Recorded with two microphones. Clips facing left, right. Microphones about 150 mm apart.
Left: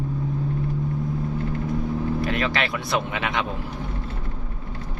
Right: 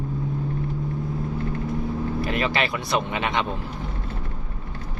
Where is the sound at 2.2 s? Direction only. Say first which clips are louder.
Even; centre (ahead or behind).